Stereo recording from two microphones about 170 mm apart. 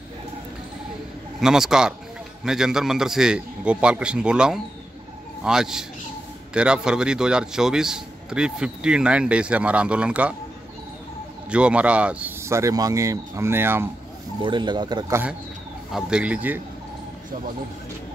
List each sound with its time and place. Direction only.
1.4 s a man's voice: 5° right (ahead or behind)
11.5 s speech: 5° right (ahead or behind)
14.4 s speech: 25° right (ahead or behind)
15.9 s a man's voice: 5° right (ahead or behind)